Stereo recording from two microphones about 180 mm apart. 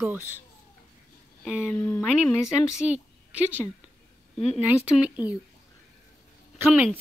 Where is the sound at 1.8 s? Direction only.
10° left (ahead or behind).